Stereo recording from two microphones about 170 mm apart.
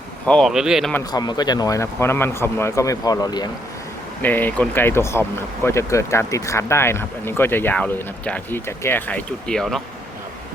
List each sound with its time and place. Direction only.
0.3 s speech: centre (ahead or behind)
1.1 s speech: 25° left (ahead or behind)
4.2 s speech: 10° left (ahead or behind)